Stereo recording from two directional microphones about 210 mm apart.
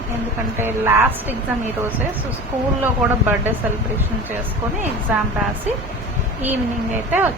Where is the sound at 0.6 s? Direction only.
10° right (ahead or behind).